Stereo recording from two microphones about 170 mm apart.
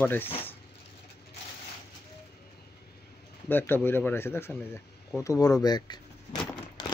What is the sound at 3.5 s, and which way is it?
Speech, 10° left (ahead or behind).